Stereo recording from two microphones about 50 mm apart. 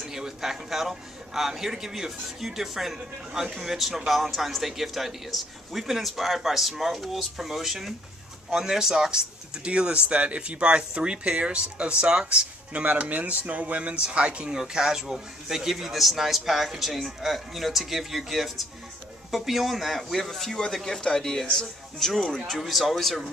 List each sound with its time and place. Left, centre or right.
0.0 s a man's voice: centre
12.7 s speech: right
14.6 s speech: centre